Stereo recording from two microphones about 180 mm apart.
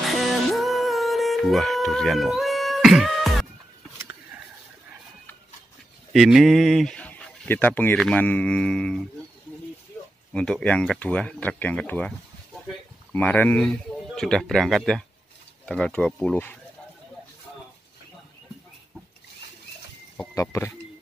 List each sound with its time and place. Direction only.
0.0 s music: centre (ahead or behind)
6.1 s speech: centre (ahead or behind)
10.3 s speech: 5° left (ahead or behind)
13.1 s speech: 10° left (ahead or behind)
20.3 s speech: 15° left (ahead or behind)